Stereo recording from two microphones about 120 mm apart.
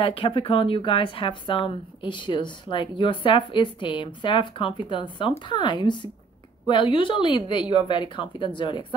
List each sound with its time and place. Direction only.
0.0 s a woman's voice: 45° left (ahead or behind)